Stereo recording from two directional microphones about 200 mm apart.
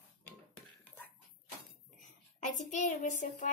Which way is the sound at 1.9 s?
40° left (ahead or behind).